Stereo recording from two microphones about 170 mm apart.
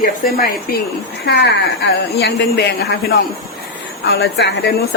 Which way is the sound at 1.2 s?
75° left (ahead or behind).